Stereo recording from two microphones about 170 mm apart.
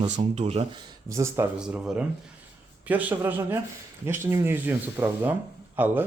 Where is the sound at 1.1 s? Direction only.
15° right (ahead or behind).